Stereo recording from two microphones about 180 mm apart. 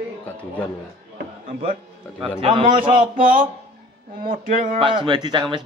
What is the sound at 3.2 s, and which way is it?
Speech, 50° right (ahead or behind).